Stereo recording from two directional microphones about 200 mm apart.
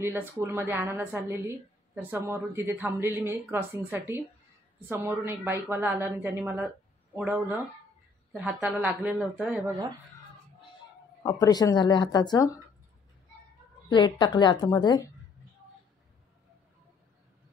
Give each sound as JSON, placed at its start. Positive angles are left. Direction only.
{"t": 0.0, "sound": "a woman's voice", "side_deg": -10}
{"t": 11.2, "sound": "speech", "side_deg": 20}
{"t": 13.8, "sound": "speech", "side_deg": 20}